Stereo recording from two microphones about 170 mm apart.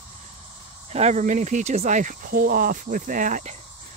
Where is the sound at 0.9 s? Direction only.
40° right (ahead or behind).